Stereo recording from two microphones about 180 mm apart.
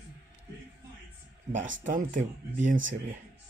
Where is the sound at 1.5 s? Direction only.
40° right (ahead or behind).